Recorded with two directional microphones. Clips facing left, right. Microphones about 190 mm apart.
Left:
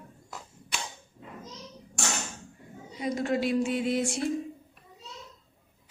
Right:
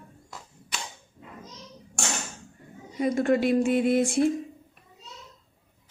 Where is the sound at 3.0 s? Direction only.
55° right (ahead or behind).